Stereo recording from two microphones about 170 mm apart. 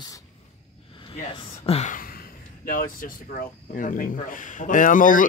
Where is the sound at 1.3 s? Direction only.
30° left (ahead or behind).